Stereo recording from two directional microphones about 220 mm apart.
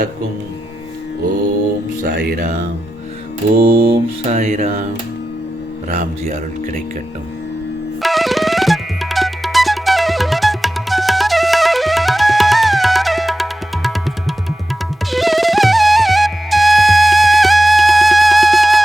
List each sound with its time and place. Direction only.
2.0 s speech: 45° right (ahead or behind)
3.6 s mantra: 25° right (ahead or behind)
4.4 s speech: 30° right (ahead or behind)
5.9 s speech: 30° right (ahead or behind)
8.0 s music: centre (ahead or behind)